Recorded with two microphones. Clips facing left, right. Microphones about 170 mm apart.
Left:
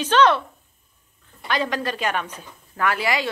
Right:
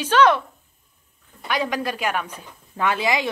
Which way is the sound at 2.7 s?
20° right (ahead or behind).